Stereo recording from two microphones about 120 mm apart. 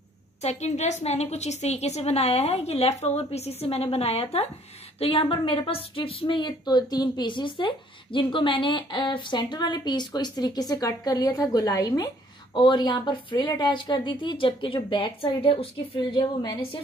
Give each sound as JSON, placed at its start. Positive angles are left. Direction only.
{"t": 0.4, "sound": "a woman's voice", "side_deg": 70}
{"t": 16.0, "sound": "a woman's voice", "side_deg": 35}